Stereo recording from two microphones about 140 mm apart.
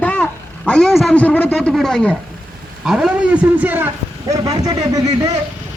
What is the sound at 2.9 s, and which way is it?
A man's voice, 5° right (ahead or behind).